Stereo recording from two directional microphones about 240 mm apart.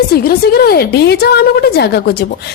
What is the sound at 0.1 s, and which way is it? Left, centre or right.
A woman's voice, left.